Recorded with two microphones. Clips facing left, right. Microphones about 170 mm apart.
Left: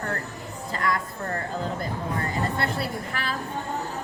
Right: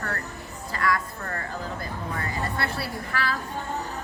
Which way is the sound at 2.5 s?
20° left (ahead or behind).